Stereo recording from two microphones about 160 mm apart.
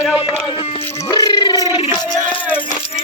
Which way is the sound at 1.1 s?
25° left (ahead or behind).